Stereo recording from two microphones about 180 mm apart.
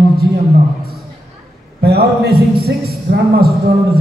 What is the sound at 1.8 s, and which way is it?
Speech, 60° right (ahead or behind).